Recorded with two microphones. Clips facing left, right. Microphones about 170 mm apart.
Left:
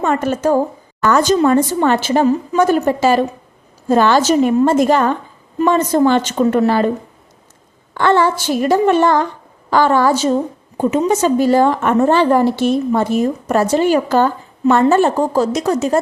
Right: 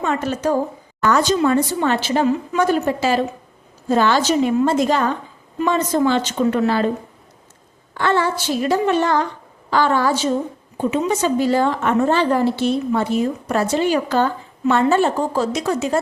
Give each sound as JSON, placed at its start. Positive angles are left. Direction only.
{"t": 0.0, "sound": "a woman's voice", "side_deg": 50}
{"t": 8.4, "sound": "a woman's voice", "side_deg": 50}